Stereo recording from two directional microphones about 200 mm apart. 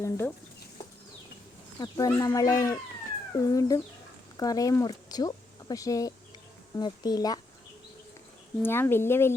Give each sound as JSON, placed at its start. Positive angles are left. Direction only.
{"t": 0.0, "sound": "speech", "side_deg": 10}
{"t": 1.8, "sound": "speech", "side_deg": 15}
{"t": 8.6, "sound": "speech", "side_deg": 10}